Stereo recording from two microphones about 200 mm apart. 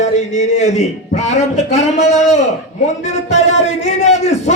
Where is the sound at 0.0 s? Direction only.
35° left (ahead or behind).